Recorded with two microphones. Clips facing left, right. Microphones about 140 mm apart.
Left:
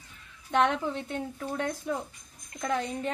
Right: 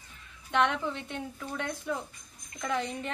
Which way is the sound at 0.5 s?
40° left (ahead or behind).